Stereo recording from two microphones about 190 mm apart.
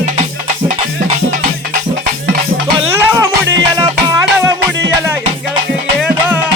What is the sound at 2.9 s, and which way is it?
Music, 15° right (ahead or behind).